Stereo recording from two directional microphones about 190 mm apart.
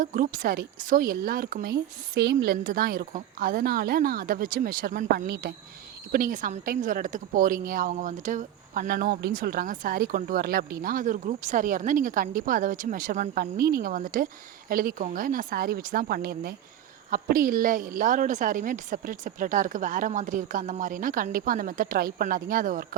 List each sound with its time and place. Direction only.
0.0 s a woman's voice: 45° right (ahead or behind)